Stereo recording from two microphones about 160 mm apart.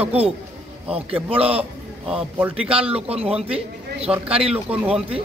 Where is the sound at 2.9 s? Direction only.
40° right (ahead or behind).